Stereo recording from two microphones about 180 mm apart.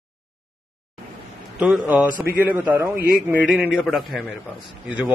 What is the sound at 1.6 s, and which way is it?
A man's voice, 5° right (ahead or behind).